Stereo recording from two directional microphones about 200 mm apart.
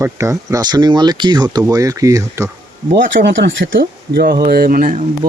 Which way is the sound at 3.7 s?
50° right (ahead or behind).